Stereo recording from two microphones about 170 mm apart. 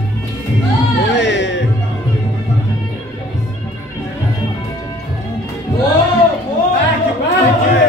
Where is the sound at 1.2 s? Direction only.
90° left.